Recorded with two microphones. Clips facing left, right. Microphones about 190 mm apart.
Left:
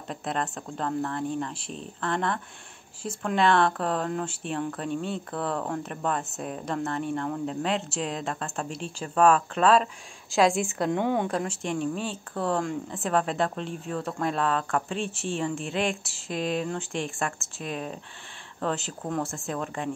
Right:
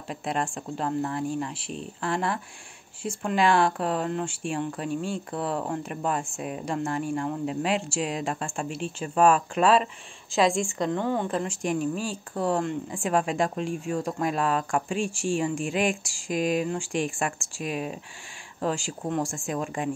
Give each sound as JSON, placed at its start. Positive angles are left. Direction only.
{"t": 0.1, "sound": "a woman's voice", "side_deg": -10}
{"t": 11.2, "sound": "a woman's voice", "side_deg": -5}